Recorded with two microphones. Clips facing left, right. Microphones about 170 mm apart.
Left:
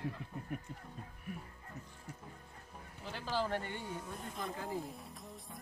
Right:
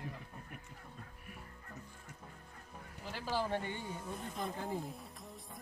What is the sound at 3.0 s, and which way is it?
Speech, 5° right (ahead or behind).